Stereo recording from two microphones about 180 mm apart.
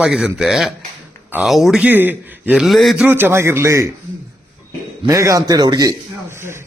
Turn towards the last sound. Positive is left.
turn(degrees=-15)  # may be behind; listen again after turning